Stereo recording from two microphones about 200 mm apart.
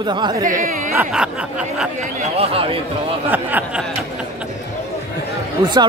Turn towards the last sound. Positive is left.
turn(degrees=-20)  # may be behind; listen again after turning